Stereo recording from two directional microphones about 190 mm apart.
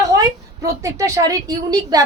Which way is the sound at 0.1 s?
15° right (ahead or behind).